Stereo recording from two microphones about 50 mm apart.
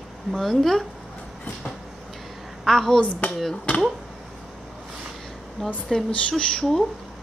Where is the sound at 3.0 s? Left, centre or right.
Left.